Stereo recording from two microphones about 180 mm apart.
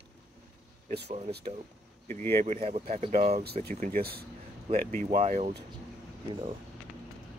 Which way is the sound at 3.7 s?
50° right (ahead or behind).